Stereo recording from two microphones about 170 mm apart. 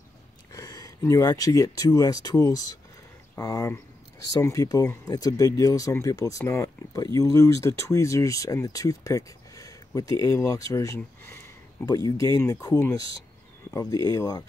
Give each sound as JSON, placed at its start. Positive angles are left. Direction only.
{"t": 0.5, "sound": "speech", "side_deg": 20}